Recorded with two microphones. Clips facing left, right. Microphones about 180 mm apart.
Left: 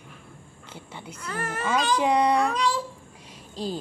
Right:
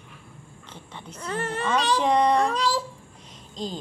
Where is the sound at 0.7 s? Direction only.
10° left (ahead or behind).